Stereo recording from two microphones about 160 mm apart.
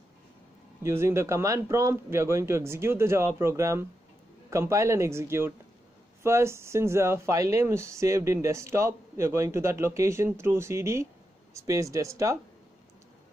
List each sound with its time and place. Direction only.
0.8 s speech: 15° right (ahead or behind)